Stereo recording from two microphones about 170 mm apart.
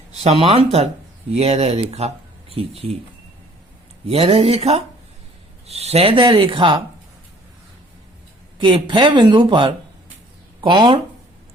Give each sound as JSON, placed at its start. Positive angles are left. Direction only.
{"t": 0.2, "sound": "speech", "side_deg": -35}
{"t": 4.0, "sound": "speech", "side_deg": -35}
{"t": 8.6, "sound": "speech", "side_deg": -30}